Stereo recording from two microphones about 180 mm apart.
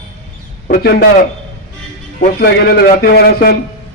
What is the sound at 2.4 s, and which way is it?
A man's voice, 60° left (ahead or behind).